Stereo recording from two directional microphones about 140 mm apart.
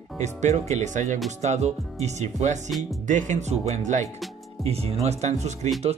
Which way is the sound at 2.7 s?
Centre (ahead or behind).